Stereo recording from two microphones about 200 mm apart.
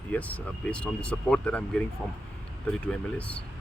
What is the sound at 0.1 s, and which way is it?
Speech, 5° left (ahead or behind).